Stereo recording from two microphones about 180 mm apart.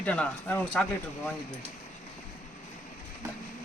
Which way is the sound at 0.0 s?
10° left (ahead or behind).